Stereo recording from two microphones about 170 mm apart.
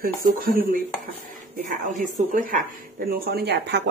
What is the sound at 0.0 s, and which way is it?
Speech, 55° right (ahead or behind).